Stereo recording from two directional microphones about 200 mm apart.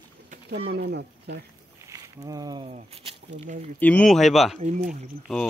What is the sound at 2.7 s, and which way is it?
Speech, 30° right (ahead or behind).